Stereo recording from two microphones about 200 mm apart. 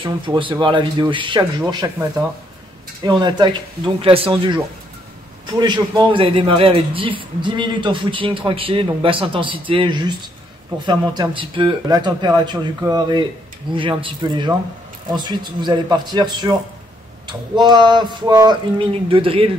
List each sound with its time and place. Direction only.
0.0 s a man's voice: 25° right (ahead or behind)
3.2 s a man's voice: 20° right (ahead or behind)